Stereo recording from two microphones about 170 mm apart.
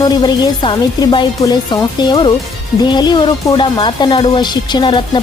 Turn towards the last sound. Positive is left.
turn(degrees=30)  # may be behind; listen again after turning